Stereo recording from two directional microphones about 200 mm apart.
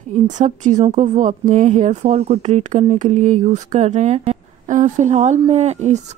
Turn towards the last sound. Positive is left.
turn(degrees=-35)  # may be behind; listen again after turning